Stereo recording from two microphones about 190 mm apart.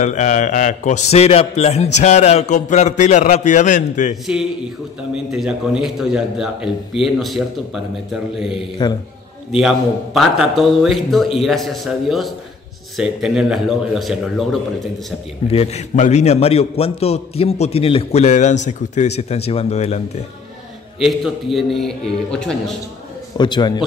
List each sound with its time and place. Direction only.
0.0 s a man's voice: 40° left (ahead or behind)
5.1 s a man's voice: 5° right (ahead or behind)
15.4 s a man's voice: 35° left (ahead or behind)
21.0 s a man's voice: centre (ahead or behind)
23.3 s a man's voice: 25° left (ahead or behind)